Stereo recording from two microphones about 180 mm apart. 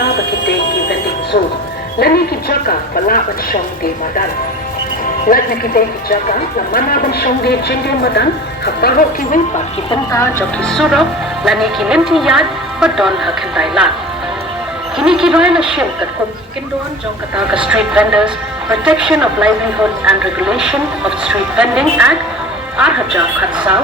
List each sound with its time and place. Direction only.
0.0 s music: 65° left (ahead or behind)
2.0 s speech: 60° left (ahead or behind)
5.3 s speech: 55° left (ahead or behind)
9.9 s speech: 20° left (ahead or behind)
10.6 s a woman's voice: centre (ahead or behind)
14.9 s a woman's voice: 5° right (ahead or behind)
17.5 s a woman's voice: 5° right (ahead or behind)